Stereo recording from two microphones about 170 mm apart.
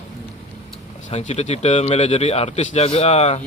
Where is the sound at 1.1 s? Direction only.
40° left (ahead or behind).